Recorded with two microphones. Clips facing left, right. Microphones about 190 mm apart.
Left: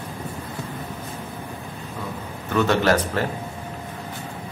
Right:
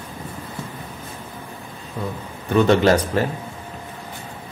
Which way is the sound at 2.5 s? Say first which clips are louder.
Right 4 dB; 15° right (ahead or behind).